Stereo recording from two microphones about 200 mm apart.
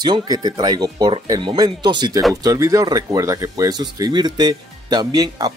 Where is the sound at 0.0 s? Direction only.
20° right (ahead or behind).